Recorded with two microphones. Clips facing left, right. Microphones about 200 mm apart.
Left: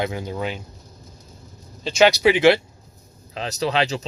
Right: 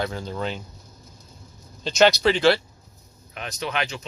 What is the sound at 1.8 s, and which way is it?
Speech, 5° left (ahead or behind).